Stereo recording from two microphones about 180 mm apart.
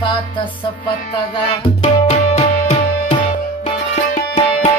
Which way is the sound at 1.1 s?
30° left (ahead or behind).